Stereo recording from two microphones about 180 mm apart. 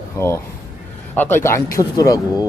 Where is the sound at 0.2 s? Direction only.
15° left (ahead or behind).